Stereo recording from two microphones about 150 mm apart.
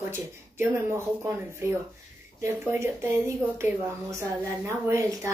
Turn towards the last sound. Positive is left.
turn(degrees=-20)  # may be behind; listen again after turning